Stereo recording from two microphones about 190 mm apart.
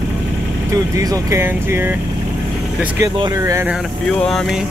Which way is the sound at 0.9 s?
15° right (ahead or behind).